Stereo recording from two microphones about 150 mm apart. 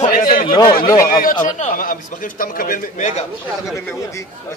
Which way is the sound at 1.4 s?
55° left (ahead or behind).